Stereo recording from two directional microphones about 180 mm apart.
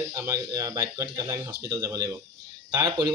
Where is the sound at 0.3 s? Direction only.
20° right (ahead or behind).